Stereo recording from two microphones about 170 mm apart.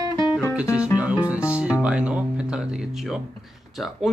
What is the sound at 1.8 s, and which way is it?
Speech, 5° right (ahead or behind).